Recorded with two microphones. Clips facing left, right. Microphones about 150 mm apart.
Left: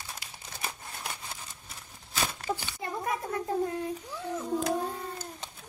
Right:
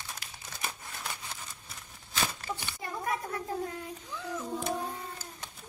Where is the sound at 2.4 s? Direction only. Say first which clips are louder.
Left 4 dB; 20° left (ahead or behind).